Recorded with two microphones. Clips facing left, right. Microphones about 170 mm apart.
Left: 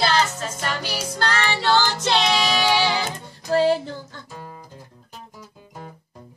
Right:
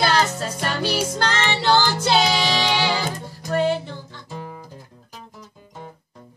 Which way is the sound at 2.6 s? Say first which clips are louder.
Left 2 dB; 10° left (ahead or behind).